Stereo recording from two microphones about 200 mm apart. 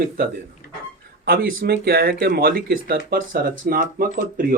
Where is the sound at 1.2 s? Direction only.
45° right (ahead or behind).